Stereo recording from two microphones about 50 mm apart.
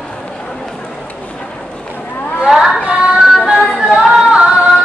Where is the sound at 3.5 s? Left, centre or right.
Centre.